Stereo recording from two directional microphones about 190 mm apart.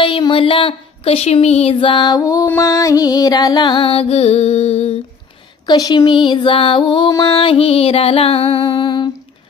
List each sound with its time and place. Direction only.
0.0 s speech: 25° left (ahead or behind)
5.7 s speech: 20° left (ahead or behind)